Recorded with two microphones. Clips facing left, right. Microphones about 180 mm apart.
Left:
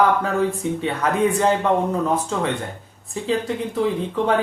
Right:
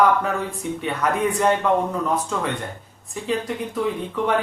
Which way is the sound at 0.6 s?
30° left (ahead or behind).